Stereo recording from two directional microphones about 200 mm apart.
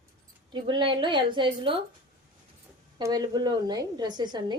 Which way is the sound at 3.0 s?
20° right (ahead or behind).